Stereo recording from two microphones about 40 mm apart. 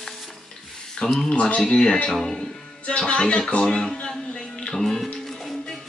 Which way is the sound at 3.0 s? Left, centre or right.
Left.